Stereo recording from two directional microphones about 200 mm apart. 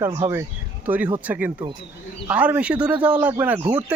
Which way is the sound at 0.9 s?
10° right (ahead or behind).